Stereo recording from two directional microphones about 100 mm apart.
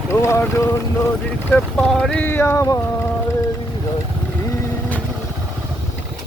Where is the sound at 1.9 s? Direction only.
10° left (ahead or behind).